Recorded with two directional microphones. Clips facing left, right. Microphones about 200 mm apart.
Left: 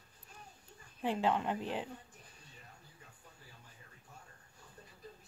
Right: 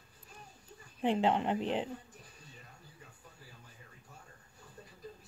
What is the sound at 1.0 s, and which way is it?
Speech, 25° right (ahead or behind).